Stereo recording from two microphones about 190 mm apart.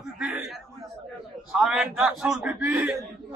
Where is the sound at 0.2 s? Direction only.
5° right (ahead or behind).